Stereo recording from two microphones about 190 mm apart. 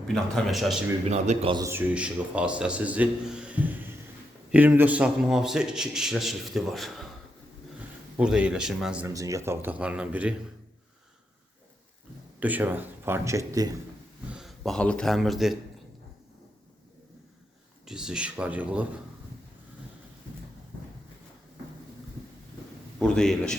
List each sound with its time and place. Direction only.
0.1 s a man's voice: 5° left (ahead or behind)
1.0 s a man's voice: 35° right (ahead or behind)
1.5 s a man's voice: 15° right (ahead or behind)
8.2 s a man's voice: 5° right (ahead or behind)
9.0 s a man's voice: 15° right (ahead or behind)
12.4 s a man's voice: 10° right (ahead or behind)
14.3 s speech: centre (ahead or behind)
17.8 s a man's voice: 5° right (ahead or behind)
23.0 s a man's voice: 5° left (ahead or behind)